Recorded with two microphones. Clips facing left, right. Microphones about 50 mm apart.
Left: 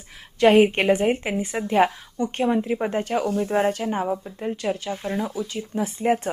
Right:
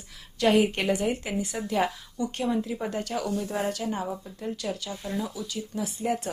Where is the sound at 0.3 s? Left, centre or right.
Left.